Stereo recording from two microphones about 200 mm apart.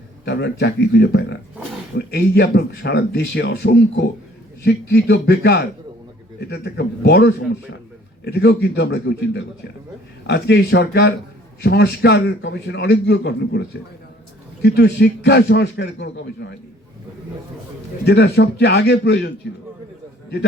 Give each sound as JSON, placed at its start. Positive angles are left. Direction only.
{"t": 0.3, "sound": "speech", "side_deg": 55}
{"t": 18.0, "sound": "speech", "side_deg": 55}